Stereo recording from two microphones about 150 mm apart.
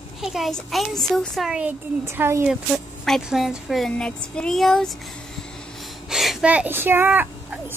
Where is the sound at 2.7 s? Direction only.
5° right (ahead or behind).